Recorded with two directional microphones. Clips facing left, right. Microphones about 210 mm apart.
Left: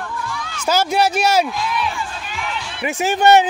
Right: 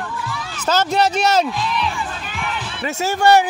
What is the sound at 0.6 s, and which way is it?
A man's voice, 10° left (ahead or behind).